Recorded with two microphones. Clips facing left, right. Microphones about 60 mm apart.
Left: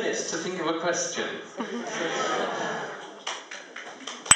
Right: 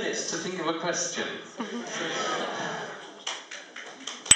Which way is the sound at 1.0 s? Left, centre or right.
Centre.